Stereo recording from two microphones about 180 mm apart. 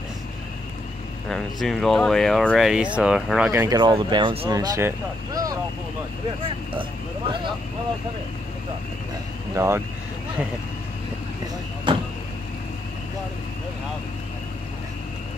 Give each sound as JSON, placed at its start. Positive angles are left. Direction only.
{"t": 1.3, "sound": "speech", "side_deg": 0}
{"t": 3.6, "sound": "speech", "side_deg": -25}
{"t": 4.5, "sound": "speech", "side_deg": -15}
{"t": 9.6, "sound": "speech", "side_deg": -15}